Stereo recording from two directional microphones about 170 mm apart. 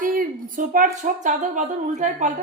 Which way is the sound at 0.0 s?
55° right (ahead or behind).